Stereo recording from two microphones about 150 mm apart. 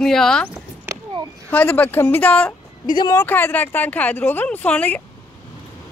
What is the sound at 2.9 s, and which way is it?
Speech, 30° left (ahead or behind).